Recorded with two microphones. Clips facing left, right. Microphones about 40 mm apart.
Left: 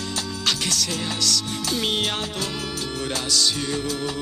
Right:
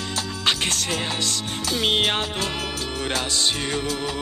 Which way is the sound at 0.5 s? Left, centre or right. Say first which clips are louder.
Right 2 dB; right.